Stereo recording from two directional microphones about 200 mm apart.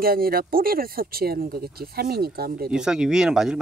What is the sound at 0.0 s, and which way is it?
Speech, 50° right (ahead or behind).